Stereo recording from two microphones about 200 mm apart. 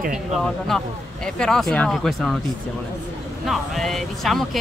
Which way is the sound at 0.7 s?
Centre (ahead or behind).